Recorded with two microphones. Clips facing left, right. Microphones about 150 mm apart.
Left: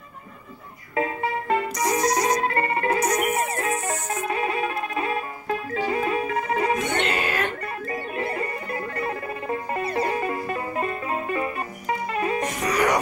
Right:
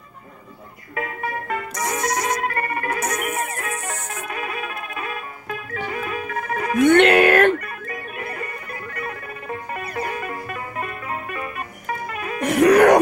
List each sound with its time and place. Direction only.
0.9 s music: 25° left (ahead or behind)
7.0 s music: 65° right (ahead or behind)
7.6 s music: 30° left (ahead or behind)
12.4 s music: 60° right (ahead or behind)